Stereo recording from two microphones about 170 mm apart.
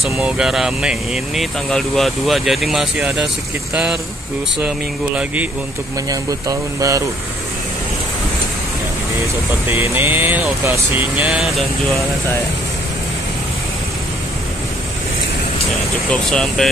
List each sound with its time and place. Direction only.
0.0 s speech: 5° right (ahead or behind)
5.1 s speech: 10° right (ahead or behind)
6.0 s speech: 20° right (ahead or behind)
9.7 s speech: 10° right (ahead or behind)
16.1 s speech: 5° left (ahead or behind)